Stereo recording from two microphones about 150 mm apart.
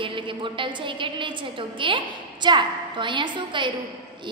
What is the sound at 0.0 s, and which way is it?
A woman's voice, 35° right (ahead or behind).